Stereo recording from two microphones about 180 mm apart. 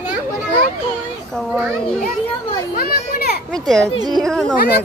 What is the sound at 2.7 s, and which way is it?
Children playing, 55° left (ahead or behind).